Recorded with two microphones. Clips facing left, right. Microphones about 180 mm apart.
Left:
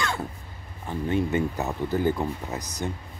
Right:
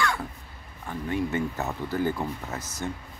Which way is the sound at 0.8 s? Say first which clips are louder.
Left 3 dB; 20° left (ahead or behind).